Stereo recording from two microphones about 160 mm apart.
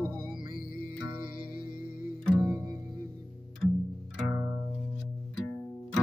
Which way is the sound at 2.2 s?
5° right (ahead or behind).